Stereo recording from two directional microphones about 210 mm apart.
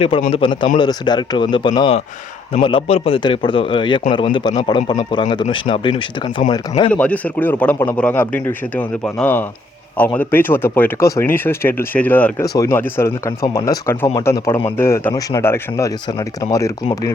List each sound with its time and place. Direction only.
0.3 s a man's voice: 25° left (ahead or behind)
6.9 s speech: 5° left (ahead or behind)